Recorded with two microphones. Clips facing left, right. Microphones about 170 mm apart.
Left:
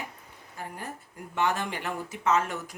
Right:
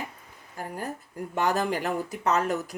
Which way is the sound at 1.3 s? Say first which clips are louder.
Right 3 dB; 40° right (ahead or behind).